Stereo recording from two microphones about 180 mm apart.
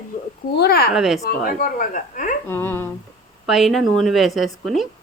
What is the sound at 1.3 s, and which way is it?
Speech, 50° left (ahead or behind).